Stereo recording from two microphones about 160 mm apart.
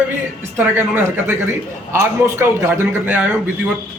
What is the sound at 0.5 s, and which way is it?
A man's voice, 10° right (ahead or behind).